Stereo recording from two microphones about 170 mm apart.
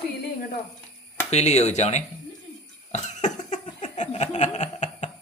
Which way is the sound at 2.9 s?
45° left (ahead or behind).